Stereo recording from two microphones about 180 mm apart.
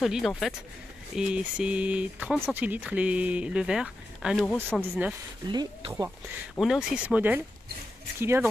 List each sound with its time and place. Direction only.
0.0 s speech: centre (ahead or behind)
5.5 s speech: 25° right (ahead or behind)
6.5 s speech: centre (ahead or behind)